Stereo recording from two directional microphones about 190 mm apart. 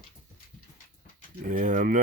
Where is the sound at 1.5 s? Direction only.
40° right (ahead or behind).